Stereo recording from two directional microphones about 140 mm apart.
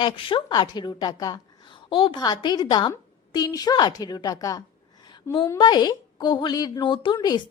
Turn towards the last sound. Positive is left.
turn(degrees=30)  # may be behind; listen again after turning